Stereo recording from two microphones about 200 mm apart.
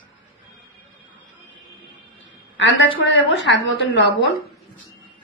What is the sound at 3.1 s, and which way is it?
A woman's voice, 65° left (ahead or behind).